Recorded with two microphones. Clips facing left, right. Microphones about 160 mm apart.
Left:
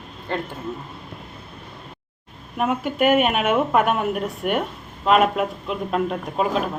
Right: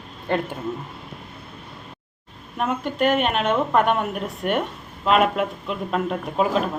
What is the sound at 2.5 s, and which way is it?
A woman's voice, 5° left (ahead or behind).